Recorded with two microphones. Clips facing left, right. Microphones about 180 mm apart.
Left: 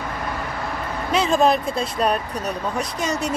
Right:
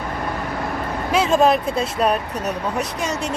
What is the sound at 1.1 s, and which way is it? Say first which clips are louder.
Speech: right 2 dB; 5° right (ahead or behind).